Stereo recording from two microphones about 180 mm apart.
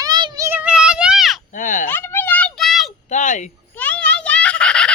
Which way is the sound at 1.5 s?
45° left (ahead or behind).